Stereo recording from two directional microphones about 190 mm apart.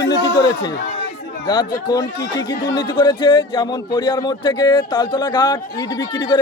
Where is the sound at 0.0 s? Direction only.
70° left (ahead or behind).